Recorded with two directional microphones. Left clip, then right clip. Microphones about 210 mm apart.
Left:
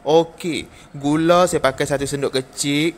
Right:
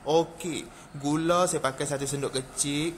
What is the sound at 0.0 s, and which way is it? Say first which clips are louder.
A man's voice: left 9 dB; 20° left (ahead or behind).